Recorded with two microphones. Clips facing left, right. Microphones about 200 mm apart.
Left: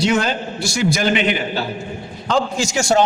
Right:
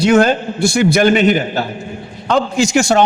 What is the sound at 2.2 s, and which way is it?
Speech, 60° right (ahead or behind).